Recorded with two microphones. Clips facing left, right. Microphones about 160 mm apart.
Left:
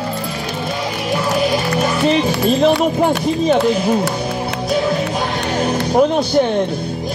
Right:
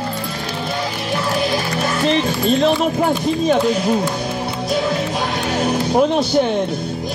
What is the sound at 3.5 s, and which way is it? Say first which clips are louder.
Speech: left 2 dB; centre (ahead or behind).